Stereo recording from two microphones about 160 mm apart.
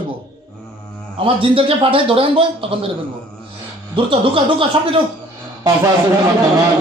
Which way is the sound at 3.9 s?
35° right (ahead or behind).